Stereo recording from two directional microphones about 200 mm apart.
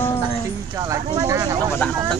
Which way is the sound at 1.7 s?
5° left (ahead or behind).